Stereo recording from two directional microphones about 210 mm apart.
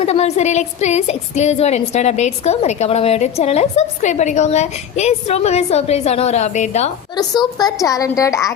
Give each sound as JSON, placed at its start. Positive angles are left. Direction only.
{"t": 0.0, "sound": "a woman's voice", "side_deg": 30}
{"t": 7.2, "sound": "a woman's voice", "side_deg": 20}